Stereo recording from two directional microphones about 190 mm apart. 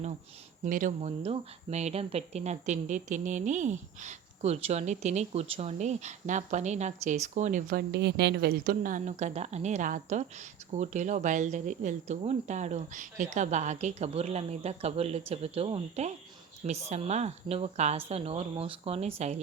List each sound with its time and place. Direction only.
0.6 s speech: 40° right (ahead or behind)